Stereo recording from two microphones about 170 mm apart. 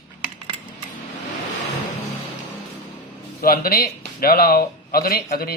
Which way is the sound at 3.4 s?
60° left (ahead or behind).